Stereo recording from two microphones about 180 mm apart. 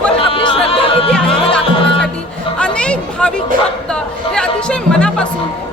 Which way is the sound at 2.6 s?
5° left (ahead or behind).